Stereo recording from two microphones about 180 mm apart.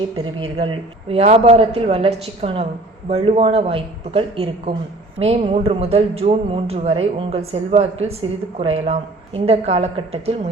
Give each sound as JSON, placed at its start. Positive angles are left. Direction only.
{"t": 0.3, "sound": "speech", "side_deg": -30}